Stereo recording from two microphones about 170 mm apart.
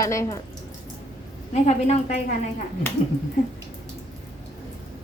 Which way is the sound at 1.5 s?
45° left (ahead or behind).